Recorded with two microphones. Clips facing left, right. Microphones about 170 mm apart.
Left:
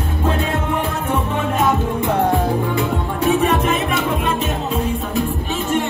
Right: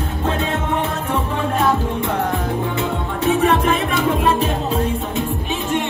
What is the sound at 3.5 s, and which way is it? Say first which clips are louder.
Music: right 1 dB; 30° right (ahead or behind).